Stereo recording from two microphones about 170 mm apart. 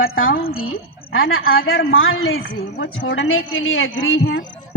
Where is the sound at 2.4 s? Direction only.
90° left.